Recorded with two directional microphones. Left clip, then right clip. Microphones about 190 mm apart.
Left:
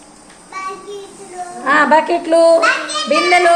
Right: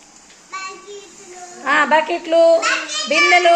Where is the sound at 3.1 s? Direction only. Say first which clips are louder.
Left 1 dB; 35° right (ahead or behind).